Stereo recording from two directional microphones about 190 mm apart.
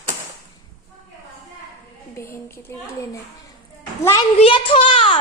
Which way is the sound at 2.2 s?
15° left (ahead or behind).